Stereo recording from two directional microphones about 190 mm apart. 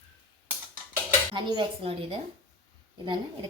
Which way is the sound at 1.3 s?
25° right (ahead or behind).